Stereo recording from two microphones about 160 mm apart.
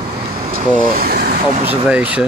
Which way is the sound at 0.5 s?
65° right (ahead or behind).